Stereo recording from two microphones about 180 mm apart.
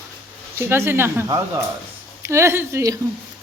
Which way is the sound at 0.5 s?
15° right (ahead or behind).